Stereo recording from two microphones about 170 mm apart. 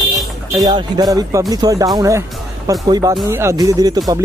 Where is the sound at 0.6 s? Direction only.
25° right (ahead or behind).